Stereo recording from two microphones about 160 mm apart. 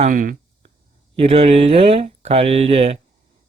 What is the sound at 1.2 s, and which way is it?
Speech, 40° right (ahead or behind).